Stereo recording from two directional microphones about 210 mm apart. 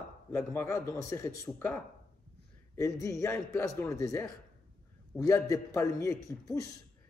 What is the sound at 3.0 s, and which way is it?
A man's voice, 15° left (ahead or behind).